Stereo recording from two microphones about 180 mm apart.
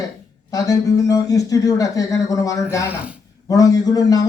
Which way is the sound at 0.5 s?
20° left (ahead or behind).